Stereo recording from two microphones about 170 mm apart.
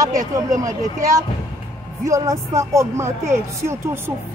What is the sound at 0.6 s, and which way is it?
A child's voice, 20° right (ahead or behind).